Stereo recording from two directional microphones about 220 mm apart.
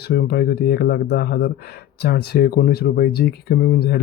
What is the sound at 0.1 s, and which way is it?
Speech, 45° left (ahead or behind).